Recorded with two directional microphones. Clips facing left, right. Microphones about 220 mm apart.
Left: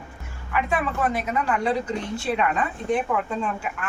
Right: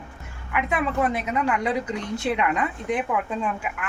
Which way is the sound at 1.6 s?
20° right (ahead or behind).